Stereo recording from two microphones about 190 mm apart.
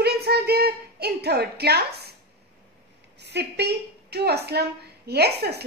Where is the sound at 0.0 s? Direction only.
55° right (ahead or behind).